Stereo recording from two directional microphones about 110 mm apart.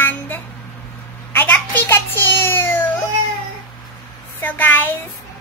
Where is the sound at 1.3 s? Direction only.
15° left (ahead or behind).